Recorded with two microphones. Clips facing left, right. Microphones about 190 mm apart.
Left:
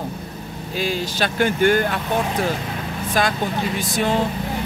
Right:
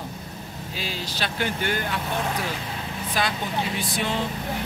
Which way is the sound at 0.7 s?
50° left (ahead or behind).